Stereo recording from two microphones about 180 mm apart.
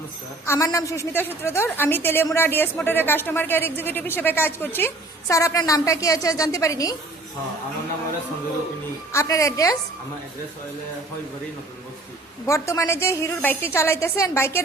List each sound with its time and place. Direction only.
0.4 s a woman's voice: 15° left (ahead or behind)
9.1 s a woman's voice: 15° left (ahead or behind)
12.5 s a woman's voice: 15° left (ahead or behind)